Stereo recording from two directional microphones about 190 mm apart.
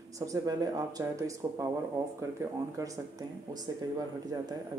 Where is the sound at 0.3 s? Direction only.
20° right (ahead or behind).